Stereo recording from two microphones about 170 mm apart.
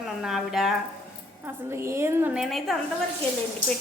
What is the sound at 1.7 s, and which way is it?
Speech, 15° right (ahead or behind).